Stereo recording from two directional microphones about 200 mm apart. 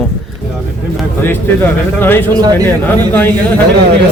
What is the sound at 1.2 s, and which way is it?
Speech, 10° left (ahead or behind).